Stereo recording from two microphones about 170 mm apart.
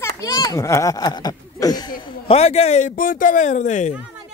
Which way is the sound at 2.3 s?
40° left (ahead or behind).